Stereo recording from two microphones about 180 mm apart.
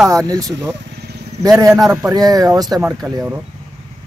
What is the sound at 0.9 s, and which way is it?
Vehicle, 65° right (ahead or behind).